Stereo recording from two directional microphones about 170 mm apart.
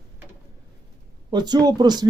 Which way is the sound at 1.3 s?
25° right (ahead or behind).